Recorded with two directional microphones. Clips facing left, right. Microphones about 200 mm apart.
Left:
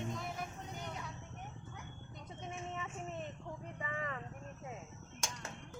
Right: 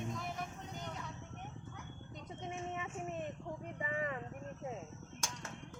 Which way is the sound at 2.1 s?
20° right (ahead or behind).